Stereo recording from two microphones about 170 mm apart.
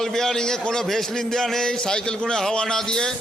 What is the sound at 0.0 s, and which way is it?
A man's voice, 5° left (ahead or behind).